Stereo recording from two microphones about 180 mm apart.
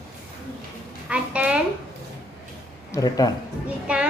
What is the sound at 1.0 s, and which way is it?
Speech, 5° right (ahead or behind).